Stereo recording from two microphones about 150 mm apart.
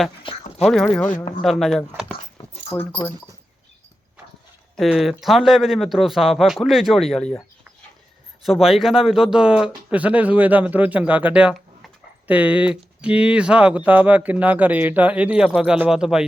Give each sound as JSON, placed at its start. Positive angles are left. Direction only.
{"t": 0.3, "sound": "a sound", "side_deg": 35}
{"t": 0.6, "sound": "speech", "side_deg": 0}
{"t": 2.7, "sound": "speech", "side_deg": 15}
{"t": 4.8, "sound": "speech", "side_deg": 0}
{"t": 8.4, "sound": "speech", "side_deg": 0}